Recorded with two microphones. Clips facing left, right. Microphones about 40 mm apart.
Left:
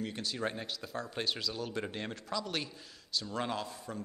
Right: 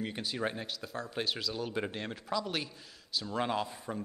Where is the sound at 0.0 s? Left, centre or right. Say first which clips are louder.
Right 1 dB; centre.